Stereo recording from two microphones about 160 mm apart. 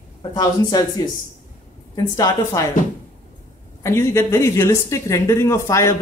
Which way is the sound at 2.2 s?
20° left (ahead or behind).